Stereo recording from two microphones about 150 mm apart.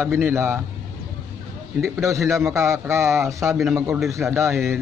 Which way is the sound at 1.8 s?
20° right (ahead or behind).